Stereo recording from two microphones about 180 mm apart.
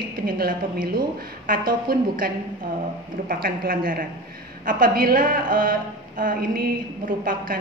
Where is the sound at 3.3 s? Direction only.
50° right (ahead or behind).